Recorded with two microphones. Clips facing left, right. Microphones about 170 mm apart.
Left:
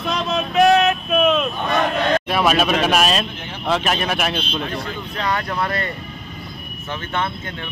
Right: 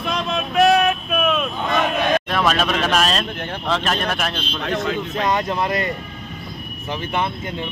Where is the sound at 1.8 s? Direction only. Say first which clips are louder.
Even; 15° right (ahead or behind).